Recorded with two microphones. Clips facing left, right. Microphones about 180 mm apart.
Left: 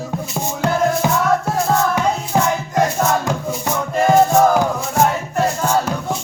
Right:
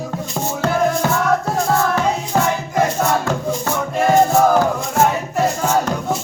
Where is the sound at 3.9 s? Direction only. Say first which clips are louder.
Left 1 dB; centre (ahead or behind).